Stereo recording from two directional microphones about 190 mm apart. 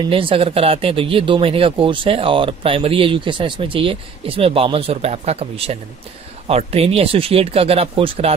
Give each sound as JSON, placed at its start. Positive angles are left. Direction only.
{"t": 0.0, "sound": "speech", "side_deg": -30}